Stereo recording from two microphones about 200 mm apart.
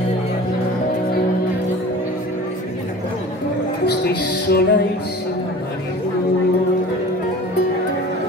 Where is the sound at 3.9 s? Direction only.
55° left (ahead or behind).